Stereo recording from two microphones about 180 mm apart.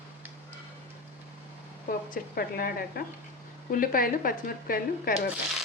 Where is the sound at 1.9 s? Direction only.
55° left (ahead or behind).